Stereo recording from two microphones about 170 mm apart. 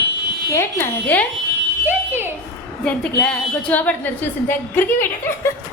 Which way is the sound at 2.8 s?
5° left (ahead or behind).